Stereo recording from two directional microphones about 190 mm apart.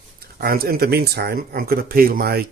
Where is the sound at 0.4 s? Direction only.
50° right (ahead or behind).